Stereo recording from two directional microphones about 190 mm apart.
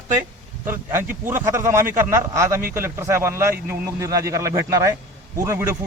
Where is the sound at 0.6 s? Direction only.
10° right (ahead or behind).